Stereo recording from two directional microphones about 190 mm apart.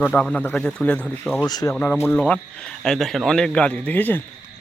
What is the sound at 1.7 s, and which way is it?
Speech, 10° left (ahead or behind).